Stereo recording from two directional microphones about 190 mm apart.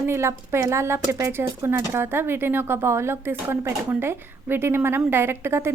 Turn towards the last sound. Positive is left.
turn(degrees=-15)  # may be behind; listen again after turning